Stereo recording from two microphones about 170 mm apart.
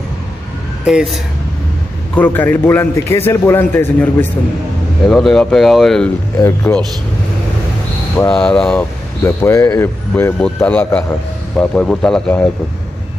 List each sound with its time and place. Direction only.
0.8 s speech: centre (ahead or behind)
2.1 s speech: 10° left (ahead or behind)
6.4 s speech: 10° left (ahead or behind)
8.3 s speech: 5° left (ahead or behind)
8.7 s speech: 15° left (ahead or behind)